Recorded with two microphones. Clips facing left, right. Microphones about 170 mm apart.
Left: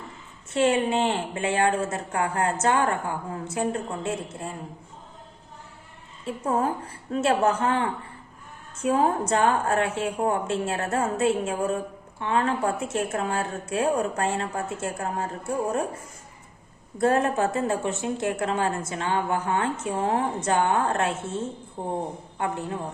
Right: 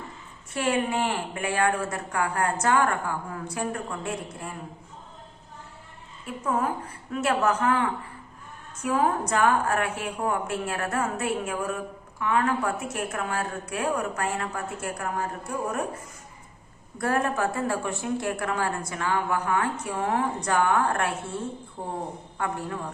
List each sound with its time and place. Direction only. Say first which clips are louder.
0.5 s a woman's voice: left 4 dB; 25° left (ahead or behind)
6.2 s a woman's voice: left 2 dB; 30° left (ahead or behind)
17.0 s a woman's voice: left 4 dB; 25° left (ahead or behind)